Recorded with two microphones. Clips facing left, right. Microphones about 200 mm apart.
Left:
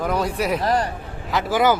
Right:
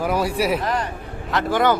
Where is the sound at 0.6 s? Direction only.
35° left (ahead or behind).